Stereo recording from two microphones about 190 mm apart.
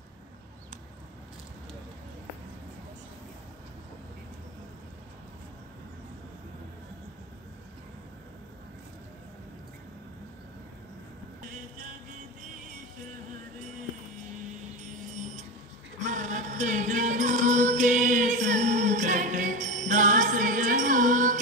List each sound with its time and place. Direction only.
16.0 s music: 40° right (ahead or behind)